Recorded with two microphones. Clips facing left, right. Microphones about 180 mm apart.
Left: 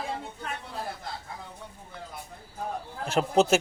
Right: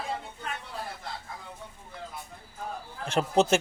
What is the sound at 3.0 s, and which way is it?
Speech, 5° left (ahead or behind).